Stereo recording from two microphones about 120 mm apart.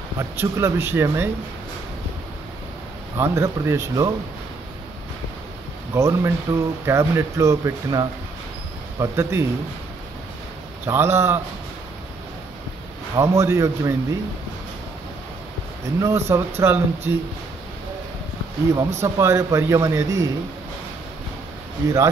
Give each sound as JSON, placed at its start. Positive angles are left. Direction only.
{"t": 0.2, "sound": "speech", "side_deg": -25}
{"t": 3.2, "sound": "speech", "side_deg": -20}
{"t": 5.9, "sound": "speech", "side_deg": -25}
{"t": 10.9, "sound": "speech", "side_deg": -20}
{"t": 13.1, "sound": "speech", "side_deg": -25}
{"t": 16.0, "sound": "speech", "side_deg": -25}
{"t": 18.8, "sound": "speech", "side_deg": -25}